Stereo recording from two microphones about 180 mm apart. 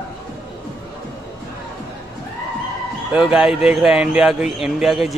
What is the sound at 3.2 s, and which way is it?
Speech, 5° right (ahead or behind).